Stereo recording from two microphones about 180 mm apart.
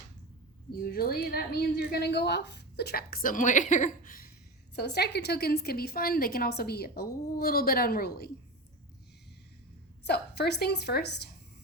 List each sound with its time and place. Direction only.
0.7 s a woman's voice: 55° left (ahead or behind)
4.7 s a woman's voice: 65° left (ahead or behind)
10.1 s a woman's voice: 65° left (ahead or behind)